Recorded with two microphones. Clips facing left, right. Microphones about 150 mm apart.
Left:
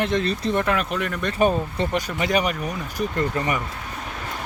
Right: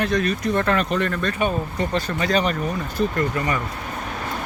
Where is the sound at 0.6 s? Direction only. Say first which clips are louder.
Right 3 dB; 5° left (ahead or behind).